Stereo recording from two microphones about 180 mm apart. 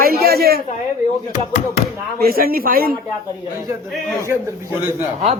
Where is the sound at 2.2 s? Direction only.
55° right (ahead or behind).